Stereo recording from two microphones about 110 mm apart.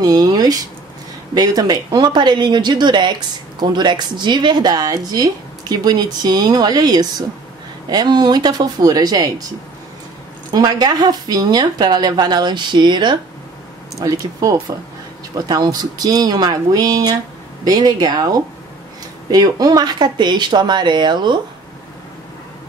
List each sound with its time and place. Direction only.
0.0 s speech: 35° right (ahead or behind)
10.5 s speech: 40° right (ahead or behind)
13.9 s speech: 35° right (ahead or behind)